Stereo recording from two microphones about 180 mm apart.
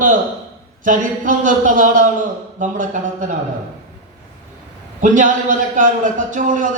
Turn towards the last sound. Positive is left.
turn(degrees=-45)  # may be behind; listen again after turning